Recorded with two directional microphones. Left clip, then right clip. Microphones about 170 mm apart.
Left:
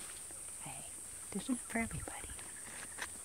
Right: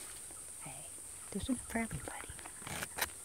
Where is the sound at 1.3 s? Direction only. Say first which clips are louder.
Right 1 dB; 5° right (ahead or behind).